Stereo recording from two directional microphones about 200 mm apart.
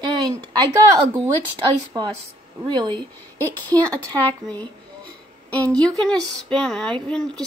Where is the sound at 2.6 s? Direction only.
25° right (ahead or behind).